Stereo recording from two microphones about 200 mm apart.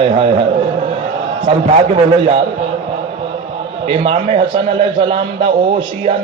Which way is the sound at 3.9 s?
35° right (ahead or behind).